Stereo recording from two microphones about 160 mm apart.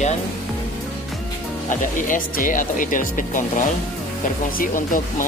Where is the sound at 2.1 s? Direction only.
55° left (ahead or behind).